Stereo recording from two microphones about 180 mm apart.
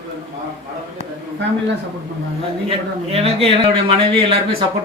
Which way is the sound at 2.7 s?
30° right (ahead or behind).